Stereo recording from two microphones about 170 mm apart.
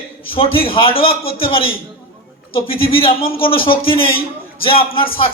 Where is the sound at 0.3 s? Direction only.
35° left (ahead or behind).